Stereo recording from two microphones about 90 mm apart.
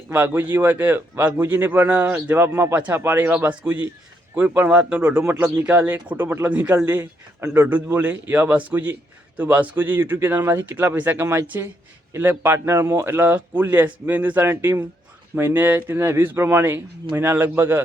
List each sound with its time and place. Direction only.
0.1 s speech: 20° right (ahead or behind)
2.7 s speech: 15° right (ahead or behind)
6.8 s speech: 30° right (ahead or behind)